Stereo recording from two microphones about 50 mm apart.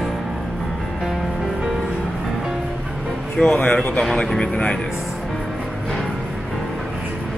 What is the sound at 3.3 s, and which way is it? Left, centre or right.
Speech, left.